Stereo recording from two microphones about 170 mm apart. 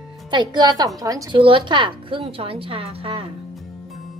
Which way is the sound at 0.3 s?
25° right (ahead or behind).